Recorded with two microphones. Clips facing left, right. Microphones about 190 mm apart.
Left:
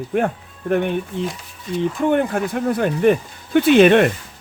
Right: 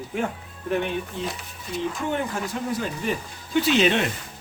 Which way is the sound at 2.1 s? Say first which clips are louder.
Left 8 dB; 60° left (ahead or behind).